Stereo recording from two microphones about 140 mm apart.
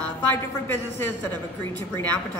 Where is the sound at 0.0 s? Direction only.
15° left (ahead or behind).